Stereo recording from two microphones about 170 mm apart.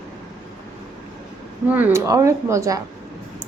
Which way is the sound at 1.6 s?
10° right (ahead or behind).